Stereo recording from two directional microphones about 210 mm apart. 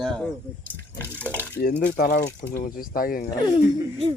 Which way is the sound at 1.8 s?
45° left (ahead or behind).